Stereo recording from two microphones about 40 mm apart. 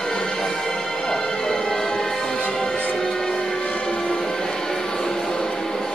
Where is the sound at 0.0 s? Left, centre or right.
Centre.